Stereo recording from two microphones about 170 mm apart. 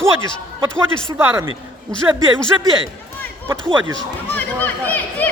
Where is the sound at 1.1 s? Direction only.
15° right (ahead or behind).